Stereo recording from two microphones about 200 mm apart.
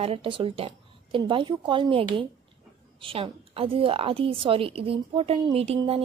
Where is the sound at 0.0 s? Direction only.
30° right (ahead or behind).